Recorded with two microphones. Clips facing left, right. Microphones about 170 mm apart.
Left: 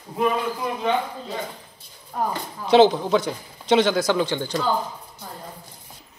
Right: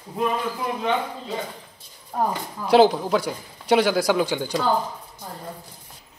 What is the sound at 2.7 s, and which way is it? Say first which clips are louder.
Speech: left 1 dB; 5° right (ahead or behind).